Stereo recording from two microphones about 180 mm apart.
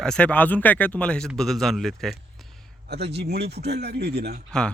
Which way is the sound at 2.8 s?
65° right (ahead or behind).